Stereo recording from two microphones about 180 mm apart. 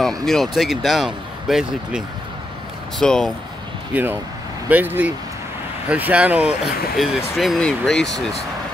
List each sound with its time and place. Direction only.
0.0 s speech: centre (ahead or behind)
3.9 s speech: 10° right (ahead or behind)